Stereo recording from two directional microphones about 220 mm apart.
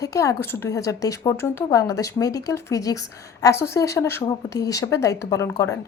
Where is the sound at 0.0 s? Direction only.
15° left (ahead or behind).